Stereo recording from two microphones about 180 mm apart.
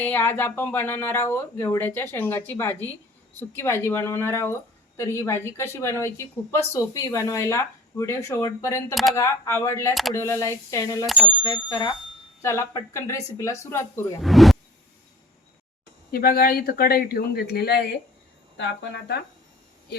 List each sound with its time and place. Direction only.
0.0 s a woman's voice: 10° left (ahead or behind)
9.9 s speech: centre (ahead or behind)
10.2 s a woman's voice: 15° left (ahead or behind)
11.0 s speech: centre (ahead or behind)
11.4 s a woman's voice: 25° left (ahead or behind)
14.2 s speech: centre (ahead or behind)
16.1 s speech: 55° left (ahead or behind)
18.5 s speech: 80° left